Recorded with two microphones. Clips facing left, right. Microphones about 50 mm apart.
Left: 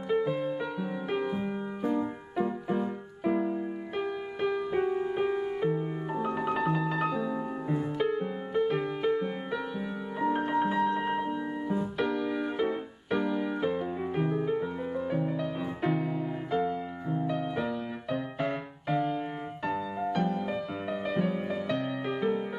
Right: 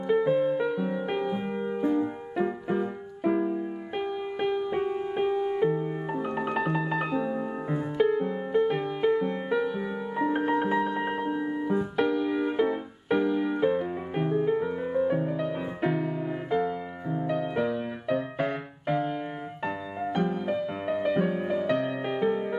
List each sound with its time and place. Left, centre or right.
0.2 s music: right
0.6 s music: centre
2.7 s music: centre
3.9 s music: centre
7.1 s music: right
8.0 s music: centre
18.9 s music: centre
20.3 s music: centre
21.6 s music: right